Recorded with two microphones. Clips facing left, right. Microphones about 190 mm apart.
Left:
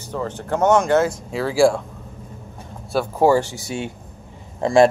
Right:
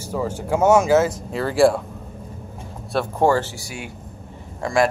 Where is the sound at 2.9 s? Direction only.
10° left (ahead or behind); by 4.9 s 25° left (ahead or behind).